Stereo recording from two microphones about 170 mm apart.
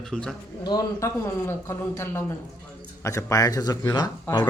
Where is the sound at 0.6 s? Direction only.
25° left (ahead or behind).